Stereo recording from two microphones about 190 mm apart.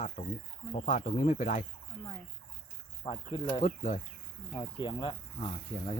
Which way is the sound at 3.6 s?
40° left (ahead or behind).